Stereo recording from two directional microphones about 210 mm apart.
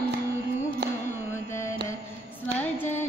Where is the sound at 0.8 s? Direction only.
55° right (ahead or behind).